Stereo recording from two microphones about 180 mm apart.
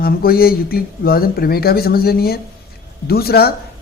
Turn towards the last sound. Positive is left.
turn(degrees=60)  # may be behind; listen again after turning